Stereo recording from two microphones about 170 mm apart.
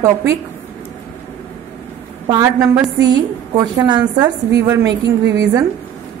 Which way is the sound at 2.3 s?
20° right (ahead or behind).